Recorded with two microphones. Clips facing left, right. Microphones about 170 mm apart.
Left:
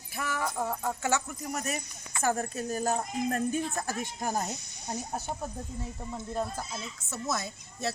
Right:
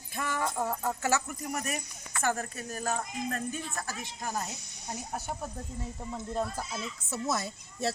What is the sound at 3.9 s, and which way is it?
Speech, 55° left (ahead or behind).